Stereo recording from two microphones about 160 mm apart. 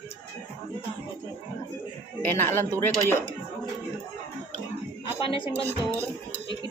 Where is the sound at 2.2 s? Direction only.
15° left (ahead or behind).